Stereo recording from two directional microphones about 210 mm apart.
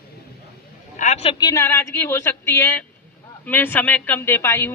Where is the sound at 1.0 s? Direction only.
30° left (ahead or behind).